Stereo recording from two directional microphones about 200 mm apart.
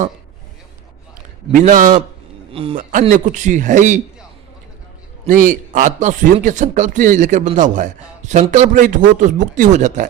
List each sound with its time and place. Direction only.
1.5 s speech: 40° right (ahead or behind)
2.5 s a man's voice: 25° right (ahead or behind)
2.7 s speech: 40° right (ahead or behind)
5.3 s speech: 45° right (ahead or behind)